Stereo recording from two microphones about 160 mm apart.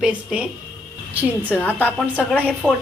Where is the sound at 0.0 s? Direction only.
5° right (ahead or behind).